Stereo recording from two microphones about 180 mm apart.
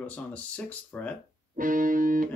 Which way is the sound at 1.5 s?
50° right (ahead or behind).